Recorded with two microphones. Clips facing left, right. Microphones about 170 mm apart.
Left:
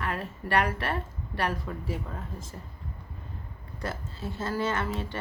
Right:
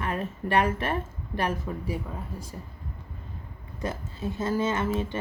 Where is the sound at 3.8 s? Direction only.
15° right (ahead or behind).